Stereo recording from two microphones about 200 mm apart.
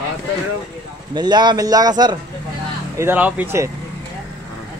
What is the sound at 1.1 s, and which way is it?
Speech, 20° right (ahead or behind).